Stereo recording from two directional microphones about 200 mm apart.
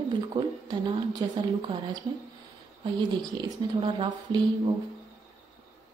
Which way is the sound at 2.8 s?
20° right (ahead or behind).